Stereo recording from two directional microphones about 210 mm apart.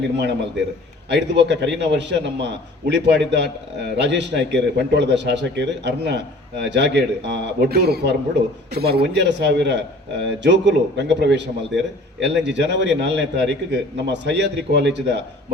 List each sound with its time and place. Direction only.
0.2 s a man's voice: 55° right (ahead or behind)